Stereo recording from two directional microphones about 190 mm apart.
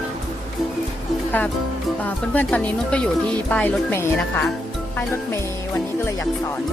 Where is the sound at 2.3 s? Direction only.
5° left (ahead or behind).